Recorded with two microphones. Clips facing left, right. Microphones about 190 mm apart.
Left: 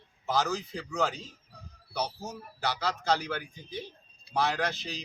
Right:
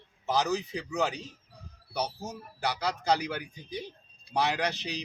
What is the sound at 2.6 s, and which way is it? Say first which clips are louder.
Speech: right 1 dB; 15° right (ahead or behind).